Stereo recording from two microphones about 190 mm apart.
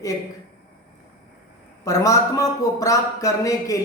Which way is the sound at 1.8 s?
15° left (ahead or behind).